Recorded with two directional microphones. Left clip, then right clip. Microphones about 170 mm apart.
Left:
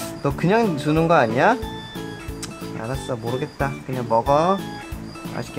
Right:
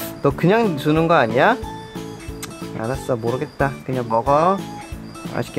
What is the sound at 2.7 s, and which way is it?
Speech, 50° right (ahead or behind).